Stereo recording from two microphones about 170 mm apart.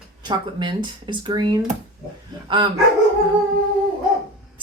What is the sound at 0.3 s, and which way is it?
A woman's voice, 25° right (ahead or behind).